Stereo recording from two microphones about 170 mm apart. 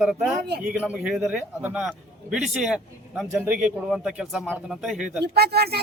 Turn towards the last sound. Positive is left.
turn(degrees=-70)  # may be behind; listen again after turning